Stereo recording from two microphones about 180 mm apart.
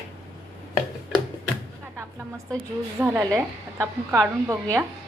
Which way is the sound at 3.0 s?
15° right (ahead or behind).